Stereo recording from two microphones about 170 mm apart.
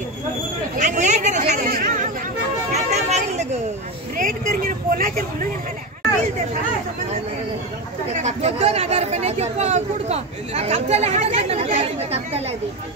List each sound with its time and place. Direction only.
0.7 s speech: 45° right (ahead or behind)
2.7 s music: 40° right (ahead or behind)
4.2 s speech: 55° right (ahead or behind)
8.1 s speech: 40° right (ahead or behind)